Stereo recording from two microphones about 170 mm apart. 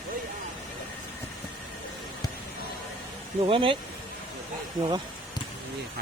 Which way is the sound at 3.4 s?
30° right (ahead or behind).